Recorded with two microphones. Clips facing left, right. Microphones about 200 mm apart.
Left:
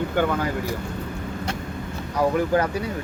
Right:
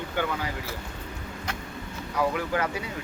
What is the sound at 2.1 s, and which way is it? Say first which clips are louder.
Speech: left 6 dB; 40° left (ahead or behind).